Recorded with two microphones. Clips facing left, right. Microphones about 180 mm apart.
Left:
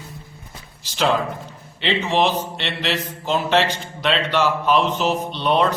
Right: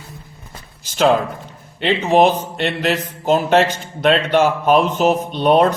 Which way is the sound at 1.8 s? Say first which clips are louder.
Right 6 dB; 45° right (ahead or behind).